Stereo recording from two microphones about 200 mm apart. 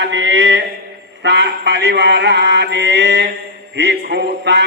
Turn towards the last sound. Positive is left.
turn(degrees=-60)  # may be behind; listen again after turning